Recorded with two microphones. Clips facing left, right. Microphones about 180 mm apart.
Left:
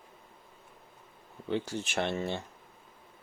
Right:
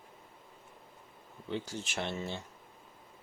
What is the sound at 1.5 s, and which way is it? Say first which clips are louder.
Speech: left 5 dB; 60° left (ahead or behind).